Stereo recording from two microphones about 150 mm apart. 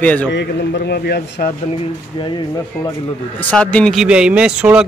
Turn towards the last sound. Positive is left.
turn(degrees=-5)  # may be behind; listen again after turning